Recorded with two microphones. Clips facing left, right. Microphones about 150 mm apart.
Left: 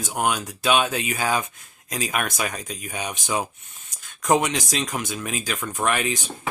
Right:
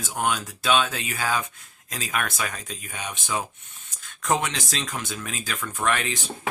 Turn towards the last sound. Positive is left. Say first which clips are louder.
# left 2 dB
turn(degrees=15)  # may be behind; listen again after turning